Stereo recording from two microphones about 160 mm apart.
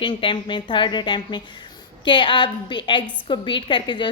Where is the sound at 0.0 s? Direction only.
30° left (ahead or behind).